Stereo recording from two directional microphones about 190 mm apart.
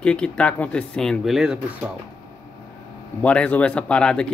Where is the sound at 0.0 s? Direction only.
5° left (ahead or behind).